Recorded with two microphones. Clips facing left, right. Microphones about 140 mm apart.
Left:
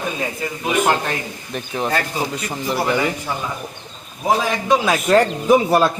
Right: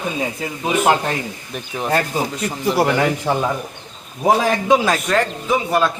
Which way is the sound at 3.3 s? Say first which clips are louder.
Right 7 dB; 70° right (ahead or behind).